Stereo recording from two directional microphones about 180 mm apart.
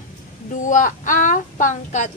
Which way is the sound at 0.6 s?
45° left (ahead or behind).